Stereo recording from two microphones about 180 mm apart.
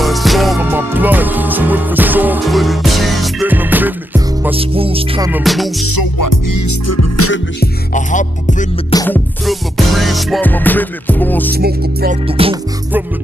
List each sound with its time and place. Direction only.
0.0 s music: centre (ahead or behind)
0.6 s music: 10° right (ahead or behind)
3.4 s music: 10° right (ahead or behind)
4.6 s music: 30° right (ahead or behind)
5.3 s music: centre (ahead or behind)
7.9 s music: 45° left (ahead or behind)
8.9 s music: 10° left (ahead or behind)
9.5 s music: centre (ahead or behind)
11.5 s music: 60° right (ahead or behind)
12.3 s music: 30° right (ahead or behind)